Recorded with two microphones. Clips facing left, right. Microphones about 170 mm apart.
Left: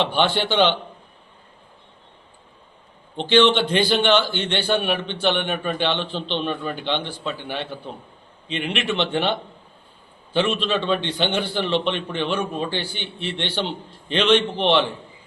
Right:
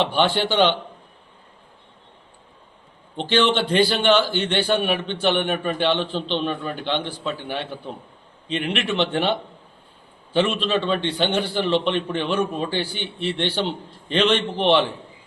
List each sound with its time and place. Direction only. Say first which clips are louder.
0.0 s a man's voice: right 1 dB; 10° right (ahead or behind)
3.2 s a man's voice: left 3 dB; 5° right (ahead or behind)
8.4 s a man's voice: right 1 dB; 5° right (ahead or behind)